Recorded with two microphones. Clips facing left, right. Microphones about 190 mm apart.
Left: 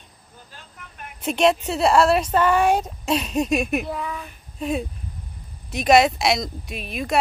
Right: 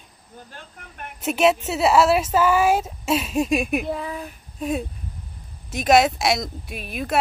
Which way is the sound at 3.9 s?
35° right (ahead or behind).